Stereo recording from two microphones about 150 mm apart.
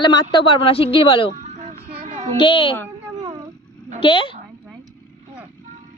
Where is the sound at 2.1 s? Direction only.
50° right (ahead or behind).